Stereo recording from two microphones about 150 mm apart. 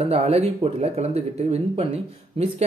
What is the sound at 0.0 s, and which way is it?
Speech, 40° right (ahead or behind).